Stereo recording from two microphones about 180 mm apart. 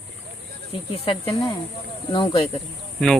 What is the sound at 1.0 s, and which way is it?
Speech, 25° left (ahead or behind).